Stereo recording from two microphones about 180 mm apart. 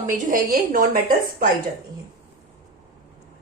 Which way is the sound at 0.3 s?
50° right (ahead or behind).